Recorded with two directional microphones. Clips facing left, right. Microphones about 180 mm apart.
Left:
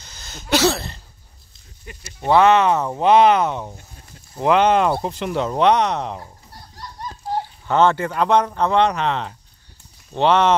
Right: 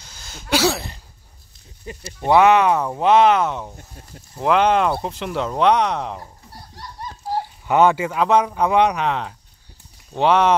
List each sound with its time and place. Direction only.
0.0 s a sound: 10° right (ahead or behind)
1.9 s speech: 30° right (ahead or behind)
2.2 s speech: 15° right (ahead or behind)
7.6 s speech: 15° right (ahead or behind)